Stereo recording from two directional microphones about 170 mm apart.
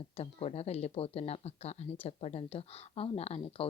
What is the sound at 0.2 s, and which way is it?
Speech, 35° left (ahead or behind).